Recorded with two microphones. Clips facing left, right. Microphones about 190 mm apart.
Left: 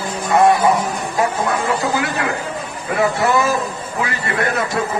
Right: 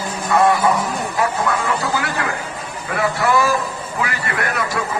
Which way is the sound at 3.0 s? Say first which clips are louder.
Left 1 dB; 20° left (ahead or behind).